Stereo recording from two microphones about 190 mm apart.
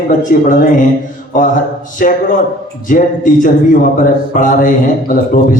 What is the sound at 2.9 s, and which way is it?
A man's voice, 45° left (ahead or behind).